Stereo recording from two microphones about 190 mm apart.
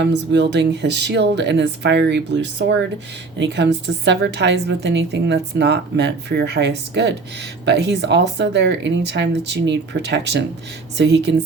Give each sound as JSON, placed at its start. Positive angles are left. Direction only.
{"t": 0.0, "sound": "a woman's voice", "side_deg": -65}